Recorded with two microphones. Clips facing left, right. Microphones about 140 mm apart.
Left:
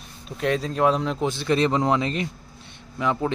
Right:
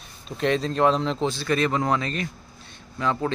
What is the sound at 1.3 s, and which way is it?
A man's voice, 20° left (ahead or behind).